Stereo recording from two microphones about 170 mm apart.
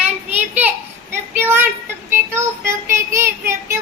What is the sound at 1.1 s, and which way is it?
A child's voice, 15° right (ahead or behind).